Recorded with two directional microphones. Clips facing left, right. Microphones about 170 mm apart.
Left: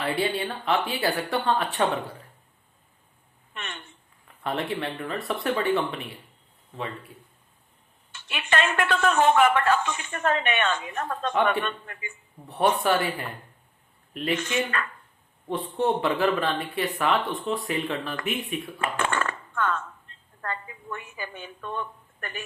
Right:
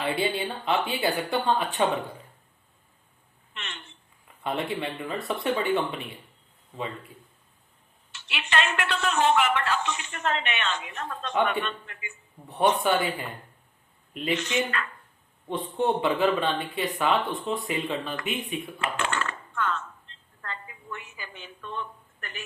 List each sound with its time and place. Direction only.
0.0 s speech: centre (ahead or behind)
3.5 s a sound: 50° left (ahead or behind)
4.4 s speech: centre (ahead or behind)
8.1 s speech: 50° left (ahead or behind)
12.5 s speech: centre (ahead or behind)
14.3 s speech: 50° left (ahead or behind)
15.4 s speech: centre (ahead or behind)
18.8 s a sound: 50° left (ahead or behind)
20.4 s a woman's voice: 50° left (ahead or behind)